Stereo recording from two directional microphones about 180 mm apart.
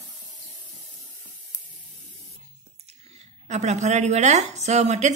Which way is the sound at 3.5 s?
40° right (ahead or behind).